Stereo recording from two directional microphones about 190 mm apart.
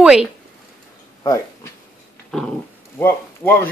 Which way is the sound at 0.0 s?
5° right (ahead or behind).